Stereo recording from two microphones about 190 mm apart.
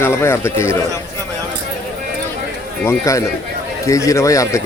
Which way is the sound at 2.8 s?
15° left (ahead or behind).